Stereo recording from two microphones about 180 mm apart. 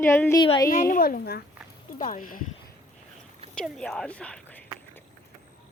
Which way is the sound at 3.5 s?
5° left (ahead or behind).